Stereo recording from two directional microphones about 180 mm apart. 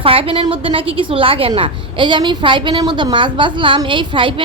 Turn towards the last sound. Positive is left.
turn(degrees=-30)  # may be behind; listen again after turning